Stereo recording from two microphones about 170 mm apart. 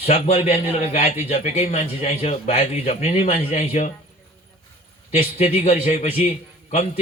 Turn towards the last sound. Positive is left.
turn(degrees=40)  # may be behind; listen again after turning